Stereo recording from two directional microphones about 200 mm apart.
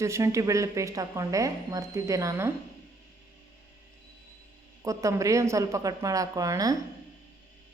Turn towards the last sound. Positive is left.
turn(degrees=-15)  # may be behind; listen again after turning